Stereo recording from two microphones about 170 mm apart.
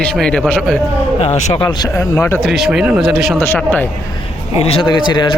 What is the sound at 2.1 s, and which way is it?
Speech, 10° left (ahead or behind).